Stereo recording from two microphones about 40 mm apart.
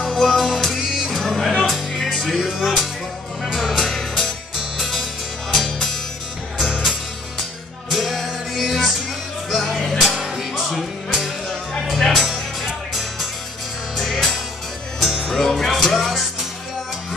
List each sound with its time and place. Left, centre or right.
0.2 s music: centre
2.0 s music: centre
3.5 s music: centre
5.5 s music: centre
11.9 s music: centre
15.3 s music: centre